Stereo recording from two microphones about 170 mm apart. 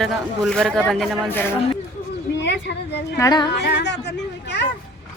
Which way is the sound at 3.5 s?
80° left.